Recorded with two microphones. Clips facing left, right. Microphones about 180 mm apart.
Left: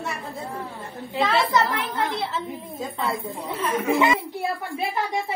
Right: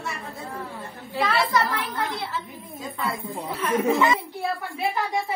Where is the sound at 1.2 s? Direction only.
20° left (ahead or behind).